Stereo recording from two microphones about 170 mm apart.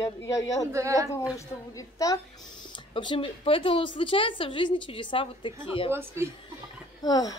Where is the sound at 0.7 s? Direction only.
15° right (ahead or behind).